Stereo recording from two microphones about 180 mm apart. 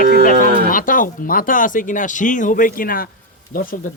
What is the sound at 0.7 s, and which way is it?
A man's voice, 50° left (ahead or behind).